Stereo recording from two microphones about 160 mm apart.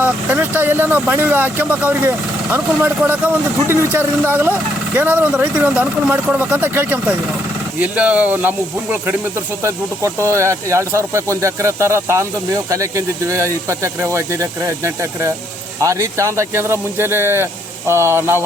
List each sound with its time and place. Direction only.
0.0 s speech: 10° right (ahead or behind)
15.8 s speech: 20° right (ahead or behind)